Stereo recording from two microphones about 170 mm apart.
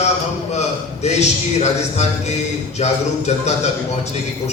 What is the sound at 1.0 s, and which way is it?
A man's voice, 40° left (ahead or behind).